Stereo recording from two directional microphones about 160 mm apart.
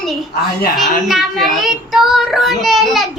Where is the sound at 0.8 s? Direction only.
Centre (ahead or behind).